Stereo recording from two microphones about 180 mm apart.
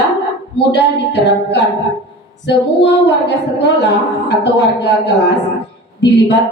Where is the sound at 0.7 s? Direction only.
75° left (ahead or behind).